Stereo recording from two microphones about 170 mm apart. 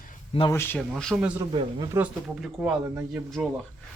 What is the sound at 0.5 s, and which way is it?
Speech, 15° left (ahead or behind).